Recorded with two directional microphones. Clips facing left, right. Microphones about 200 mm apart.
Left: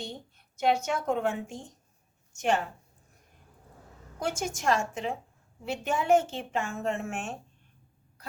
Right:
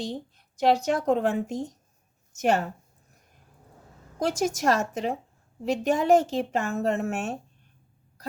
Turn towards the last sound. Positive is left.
turn(degrees=-40)  # may be behind; listen again after turning